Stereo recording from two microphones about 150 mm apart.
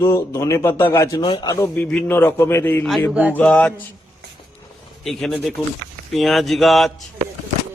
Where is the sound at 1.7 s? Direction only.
10° left (ahead or behind).